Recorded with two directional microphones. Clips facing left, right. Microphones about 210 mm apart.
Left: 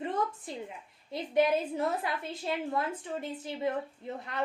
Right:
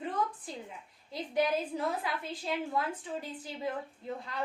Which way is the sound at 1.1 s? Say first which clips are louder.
Left 4 dB; 25° left (ahead or behind).